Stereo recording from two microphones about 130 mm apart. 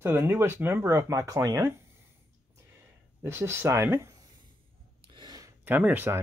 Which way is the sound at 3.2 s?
20° right (ahead or behind).